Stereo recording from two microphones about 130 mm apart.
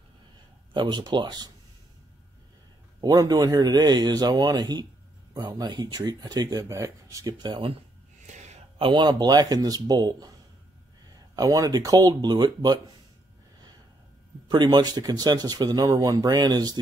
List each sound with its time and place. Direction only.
0.7 s speech: 35° right (ahead or behind)
3.0 s speech: 30° right (ahead or behind)
7.4 s speech: 40° right (ahead or behind)
8.3 s a sound: 60° right (ahead or behind)
8.7 s speech: 40° right (ahead or behind)
11.3 s speech: 25° right (ahead or behind)
14.5 s speech: 35° right (ahead or behind)